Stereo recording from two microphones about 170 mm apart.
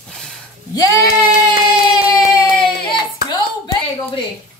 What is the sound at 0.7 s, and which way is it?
Child singing, 20° left (ahead or behind).